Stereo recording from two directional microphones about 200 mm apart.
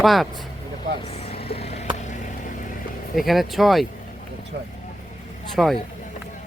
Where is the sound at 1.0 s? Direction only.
30° left (ahead or behind).